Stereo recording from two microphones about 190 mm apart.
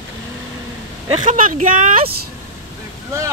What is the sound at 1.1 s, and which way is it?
Speech, 40° right (ahead or behind).